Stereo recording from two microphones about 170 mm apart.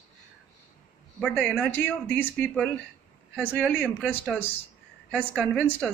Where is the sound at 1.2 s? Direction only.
5° left (ahead or behind).